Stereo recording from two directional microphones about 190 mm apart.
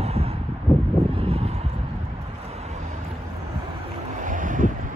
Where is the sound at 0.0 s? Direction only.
30° right (ahead or behind).